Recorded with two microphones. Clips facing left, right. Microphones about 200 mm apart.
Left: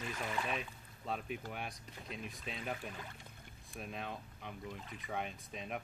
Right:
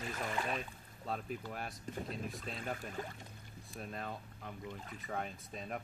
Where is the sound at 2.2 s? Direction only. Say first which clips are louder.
Right 4 dB; 50° right (ahead or behind).